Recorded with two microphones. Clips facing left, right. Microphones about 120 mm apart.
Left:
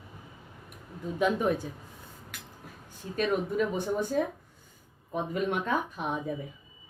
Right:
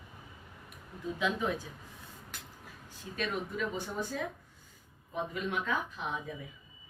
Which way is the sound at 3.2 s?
45° left (ahead or behind).